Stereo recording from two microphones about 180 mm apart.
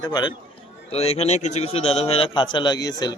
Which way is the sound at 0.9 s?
35° left (ahead or behind).